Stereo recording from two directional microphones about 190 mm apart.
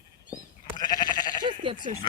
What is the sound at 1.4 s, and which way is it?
Sheep, 25° right (ahead or behind).